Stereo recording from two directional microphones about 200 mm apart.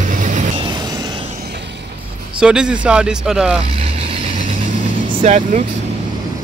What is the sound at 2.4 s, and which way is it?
Speech, 5° right (ahead or behind).